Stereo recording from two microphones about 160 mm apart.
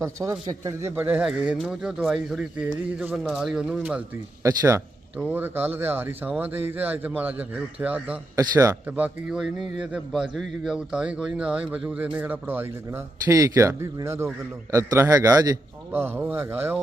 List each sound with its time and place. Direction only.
0.0 s speech: 20° right (ahead or behind)
4.4 s a man's voice: 20° right (ahead or behind)
8.4 s a man's voice: 20° right (ahead or behind)
8.9 s a man's voice: 10° right (ahead or behind)
15.9 s speech: 10° right (ahead or behind)